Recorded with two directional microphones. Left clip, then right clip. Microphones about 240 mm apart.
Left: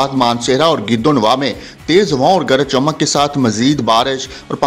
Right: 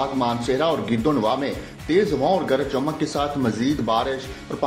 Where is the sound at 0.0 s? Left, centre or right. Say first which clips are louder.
Left 9 dB; left.